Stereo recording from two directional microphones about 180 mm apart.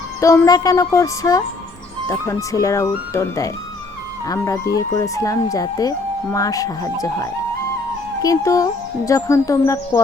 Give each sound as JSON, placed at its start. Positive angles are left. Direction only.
{"t": 0.2, "sound": "speech", "side_deg": 15}